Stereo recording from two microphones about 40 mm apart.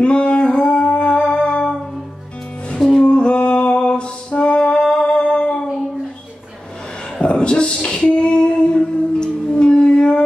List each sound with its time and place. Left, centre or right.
0.0 s music: left
2.8 s music: left
7.2 s a sound: left